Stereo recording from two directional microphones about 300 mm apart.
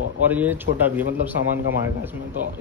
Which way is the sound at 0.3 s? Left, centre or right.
Centre.